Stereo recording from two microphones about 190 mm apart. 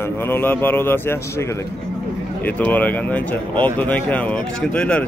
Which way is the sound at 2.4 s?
10° left (ahead or behind).